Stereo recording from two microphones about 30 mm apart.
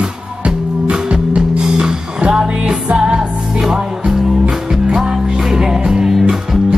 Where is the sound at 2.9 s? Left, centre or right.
Right.